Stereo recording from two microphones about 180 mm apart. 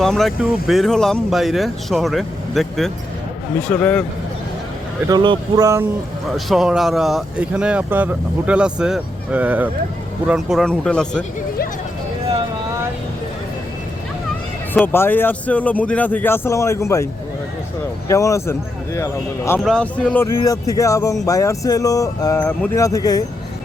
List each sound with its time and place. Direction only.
0.0 s speech: centre (ahead or behind)
5.0 s speech: 25° right (ahead or behind)
6.3 s speech: centre (ahead or behind)
14.7 s speech: 10° left (ahead or behind)
18.1 s speech: 15° left (ahead or behind)
19.5 s speech: 5° left (ahead or behind)
20.2 s speech: 20° left (ahead or behind)